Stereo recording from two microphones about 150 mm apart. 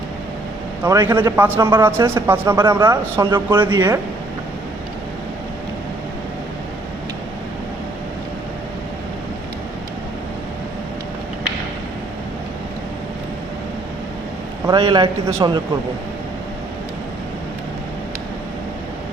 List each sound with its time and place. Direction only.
0.9 s a man's voice: 15° right (ahead or behind)
3.8 s a man's voice: 20° right (ahead or behind)
14.7 s a man's voice: 30° right (ahead or behind)